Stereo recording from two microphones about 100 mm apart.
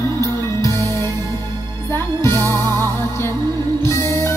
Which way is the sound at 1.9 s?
25° left (ahead or behind).